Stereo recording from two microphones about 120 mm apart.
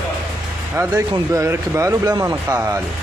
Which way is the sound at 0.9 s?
30° right (ahead or behind).